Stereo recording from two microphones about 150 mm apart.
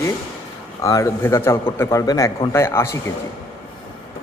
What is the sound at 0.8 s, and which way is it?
A man's voice, 20° left (ahead or behind).